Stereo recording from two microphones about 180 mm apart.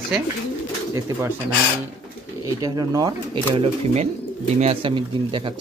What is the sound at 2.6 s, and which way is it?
Speech, 20° right (ahead or behind).